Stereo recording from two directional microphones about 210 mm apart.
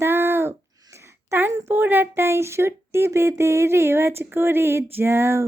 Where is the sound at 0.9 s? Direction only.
10° right (ahead or behind).